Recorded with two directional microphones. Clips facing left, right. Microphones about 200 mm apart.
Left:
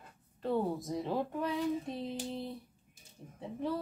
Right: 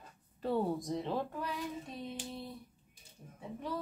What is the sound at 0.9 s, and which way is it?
Speech, 10° left (ahead or behind).